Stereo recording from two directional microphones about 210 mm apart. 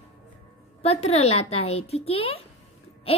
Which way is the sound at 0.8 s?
30° left (ahead or behind).